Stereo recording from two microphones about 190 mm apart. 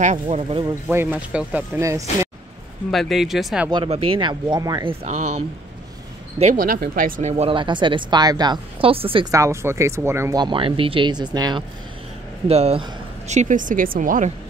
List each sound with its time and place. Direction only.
0.0 s a woman's voice: 40° right (ahead or behind)
0.8 s speech: 10° right (ahead or behind)
2.9 s speech: centre (ahead or behind)
3.7 s speech: 30° right (ahead or behind)
6.4 s speech: 45° right (ahead or behind); by 9.3 s 30° right (ahead or behind)
9.3 s speech: 15° right (ahead or behind)
12.4 s a woman's voice: 30° right (ahead or behind)